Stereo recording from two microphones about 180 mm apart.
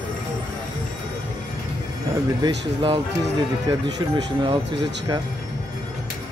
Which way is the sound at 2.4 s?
30° right (ahead or behind).